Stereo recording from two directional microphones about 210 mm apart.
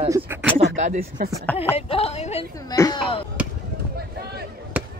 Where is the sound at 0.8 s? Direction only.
35° right (ahead or behind).